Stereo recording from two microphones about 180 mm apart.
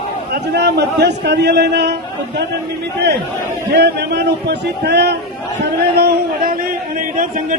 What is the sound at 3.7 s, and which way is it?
Speech, 70° right (ahead or behind).